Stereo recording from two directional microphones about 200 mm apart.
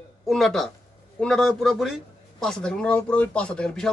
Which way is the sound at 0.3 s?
Centre (ahead or behind).